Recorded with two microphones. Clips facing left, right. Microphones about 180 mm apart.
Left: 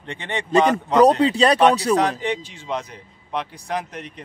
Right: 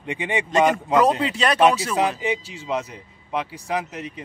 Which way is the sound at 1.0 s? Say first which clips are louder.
Left 6 dB; 35° left (ahead or behind).